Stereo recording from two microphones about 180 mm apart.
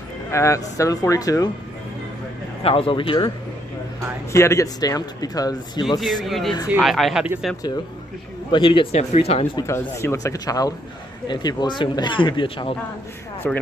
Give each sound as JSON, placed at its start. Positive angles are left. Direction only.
{"t": 0.3, "sound": "speech", "side_deg": 15}
{"t": 2.6, "sound": "speech", "side_deg": 30}
{"t": 4.3, "sound": "speech", "side_deg": 15}
{"t": 6.2, "sound": "speech", "side_deg": 0}
{"t": 8.5, "sound": "speech", "side_deg": 30}
{"t": 9.6, "sound": "speech", "side_deg": 15}
{"t": 13.4, "sound": "speech", "side_deg": 10}